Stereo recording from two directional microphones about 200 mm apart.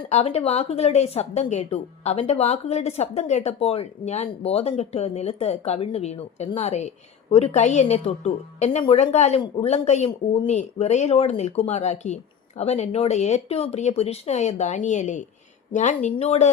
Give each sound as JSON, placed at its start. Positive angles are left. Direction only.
{"t": 0.1, "sound": "a woman's voice", "side_deg": 30}